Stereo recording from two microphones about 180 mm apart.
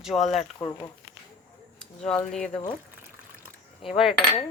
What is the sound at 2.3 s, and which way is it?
Speech, 5° left (ahead or behind).